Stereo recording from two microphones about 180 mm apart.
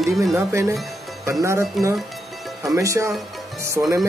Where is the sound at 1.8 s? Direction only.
Centre (ahead or behind).